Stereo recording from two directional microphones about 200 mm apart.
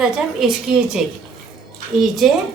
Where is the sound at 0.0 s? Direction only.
5° right (ahead or behind).